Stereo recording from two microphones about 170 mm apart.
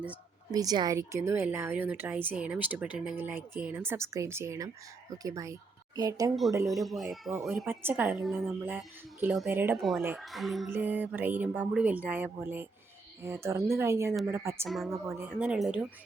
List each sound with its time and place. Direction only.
0.5 s speech: 20° right (ahead or behind)
6.7 s speech: centre (ahead or behind)
7.7 s speech: 10° right (ahead or behind)
8.0 s speech: centre (ahead or behind)
9.5 s speech: 10° right (ahead or behind)
10.2 s speech: centre (ahead or behind)
10.7 s speech: 10° right (ahead or behind)
14.7 s speech: centre (ahead or behind)
14.9 s speech: 15° right (ahead or behind)
15.4 s speech: 5° right (ahead or behind)